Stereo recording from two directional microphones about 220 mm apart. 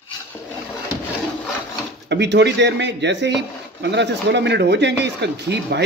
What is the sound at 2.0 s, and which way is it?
Speech, 50° right (ahead or behind).